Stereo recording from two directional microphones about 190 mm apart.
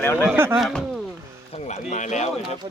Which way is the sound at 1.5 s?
35° left (ahead or behind).